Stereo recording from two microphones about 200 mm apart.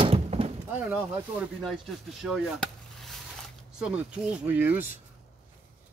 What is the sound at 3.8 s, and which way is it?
Speech, 5° right (ahead or behind).